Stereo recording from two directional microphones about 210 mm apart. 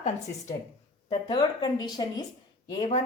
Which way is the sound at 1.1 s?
20° left (ahead or behind).